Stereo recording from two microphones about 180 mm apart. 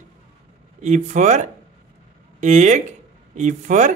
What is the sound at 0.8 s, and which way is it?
Speech, 40° right (ahead or behind).